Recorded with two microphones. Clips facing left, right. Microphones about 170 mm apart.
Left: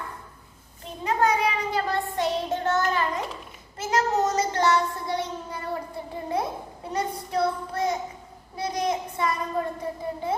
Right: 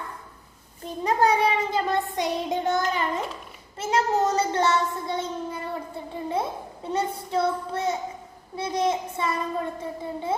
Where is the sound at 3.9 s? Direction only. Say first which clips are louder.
Right 1 dB; 30° right (ahead or behind).